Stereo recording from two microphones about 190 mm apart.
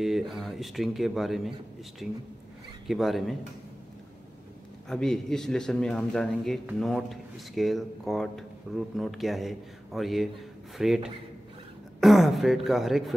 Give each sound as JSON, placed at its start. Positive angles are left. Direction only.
{"t": 0.0, "sound": "a man's voice", "side_deg": 0}
{"t": 4.8, "sound": "a man's voice", "side_deg": 5}